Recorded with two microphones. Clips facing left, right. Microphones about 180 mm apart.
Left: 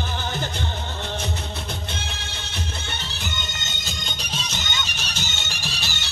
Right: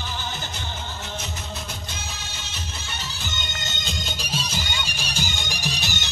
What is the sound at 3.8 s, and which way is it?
Music, 5° right (ahead or behind).